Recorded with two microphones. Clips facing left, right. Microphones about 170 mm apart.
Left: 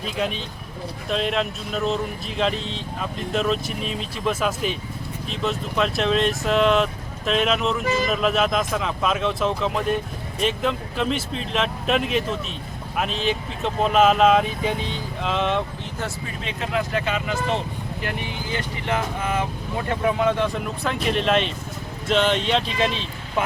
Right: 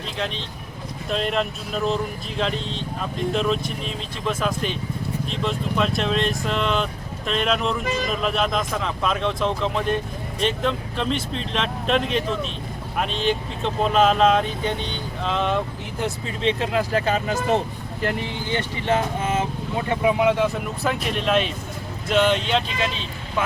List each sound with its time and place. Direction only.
0.2 s speech: 5° left (ahead or behind)
16.4 s speech: 30° right (ahead or behind)
18.5 s speech: 30° right (ahead or behind)
19.9 s speech: 15° right (ahead or behind)